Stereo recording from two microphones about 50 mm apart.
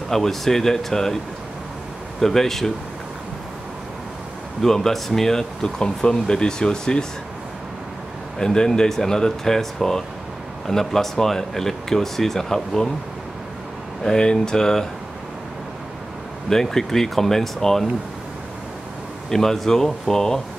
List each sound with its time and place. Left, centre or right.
0.1 s speech: centre
2.1 s speech: centre
4.6 s speech: centre
8.4 s speech: centre
14.0 s speech: centre
16.4 s speech: centre
19.3 s speech: centre